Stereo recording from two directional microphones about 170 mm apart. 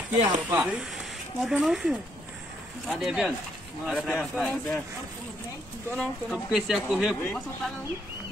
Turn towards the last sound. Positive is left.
turn(degrees=0)  # may be behind; listen again after turning